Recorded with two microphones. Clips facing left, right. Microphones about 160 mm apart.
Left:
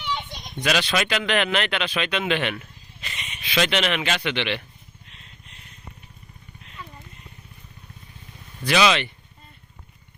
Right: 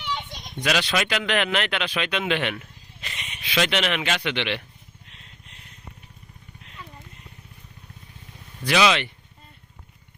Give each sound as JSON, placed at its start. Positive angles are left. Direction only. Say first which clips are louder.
{"t": 0.6, "sound": "speech", "louder": "left 1 dB", "side_deg": -10}
{"t": 3.0, "sound": "a sound", "louder": "left 1 dB", "side_deg": -60}
{"t": 3.4, "sound": "speech", "louder": "left 1 dB", "side_deg": -10}
{"t": 8.6, "sound": "speech", "louder": "even", "side_deg": -10}